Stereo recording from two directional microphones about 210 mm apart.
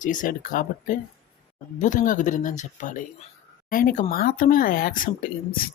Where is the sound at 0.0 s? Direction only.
40° left (ahead or behind).